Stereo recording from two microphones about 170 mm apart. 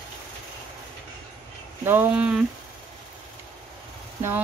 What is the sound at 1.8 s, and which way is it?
Speech, 10° right (ahead or behind).